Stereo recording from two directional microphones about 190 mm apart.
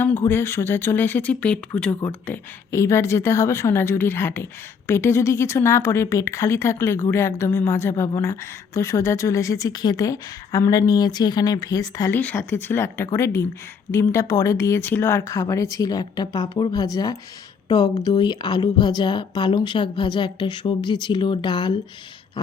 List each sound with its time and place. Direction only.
0.0 s a woman's voice: 10° left (ahead or behind)